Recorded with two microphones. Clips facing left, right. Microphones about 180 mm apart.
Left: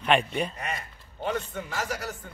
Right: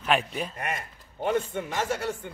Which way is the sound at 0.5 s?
55° right (ahead or behind).